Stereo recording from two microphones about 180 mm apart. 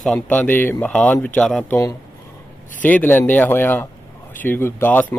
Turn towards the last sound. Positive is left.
turn(degrees=10)  # may be behind; listen again after turning